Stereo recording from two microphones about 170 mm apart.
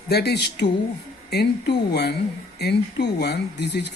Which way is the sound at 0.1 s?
75° left (ahead or behind).